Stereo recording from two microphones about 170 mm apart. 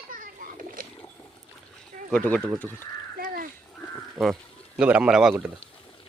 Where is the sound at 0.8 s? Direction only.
55° right (ahead or behind).